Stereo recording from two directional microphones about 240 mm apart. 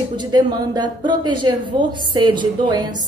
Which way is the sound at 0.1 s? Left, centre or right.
Centre.